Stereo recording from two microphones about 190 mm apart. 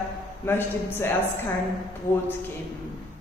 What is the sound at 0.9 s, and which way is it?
Speech, 10° left (ahead or behind).